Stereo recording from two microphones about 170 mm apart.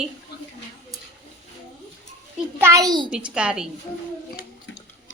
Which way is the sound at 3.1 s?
5° right (ahead or behind).